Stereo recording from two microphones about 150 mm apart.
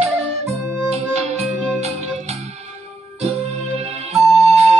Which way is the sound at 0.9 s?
45° right (ahead or behind).